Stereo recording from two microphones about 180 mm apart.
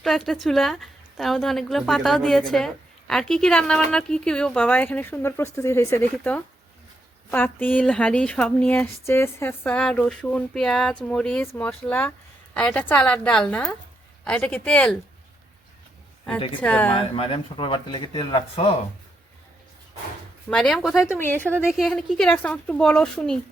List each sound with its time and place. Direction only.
0.0 s a woman's voice: centre (ahead or behind)
16.6 s speech: 10° left (ahead or behind)
16.9 s speech: 30° left (ahead or behind)
20.5 s a woman's voice: 5° left (ahead or behind)
21.1 s speech: 10° left (ahead or behind)
21.7 s a woman's voice: centre (ahead or behind)